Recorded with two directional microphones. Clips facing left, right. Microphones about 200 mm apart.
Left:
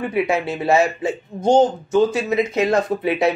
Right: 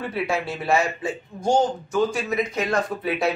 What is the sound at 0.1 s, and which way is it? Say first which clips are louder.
Speech: left 6 dB; 20° left (ahead or behind).